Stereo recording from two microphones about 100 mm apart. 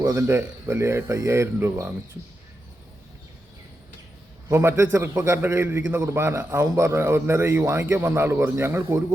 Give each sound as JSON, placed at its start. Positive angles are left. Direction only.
{"t": 0.0, "sound": "a man's voice", "side_deg": -30}
{"t": 4.4, "sound": "a man's voice", "side_deg": -25}